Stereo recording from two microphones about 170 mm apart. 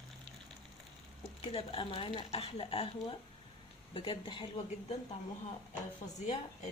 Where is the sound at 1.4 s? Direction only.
30° left (ahead or behind).